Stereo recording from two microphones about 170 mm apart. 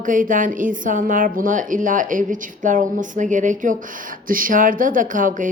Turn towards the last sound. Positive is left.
turn(degrees=-50)  # may be behind; listen again after turning